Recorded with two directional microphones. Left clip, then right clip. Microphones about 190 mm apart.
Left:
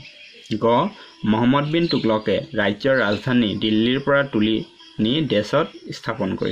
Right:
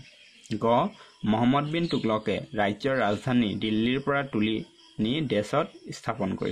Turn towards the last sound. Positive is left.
turn(degrees=-30)  # may be behind; listen again after turning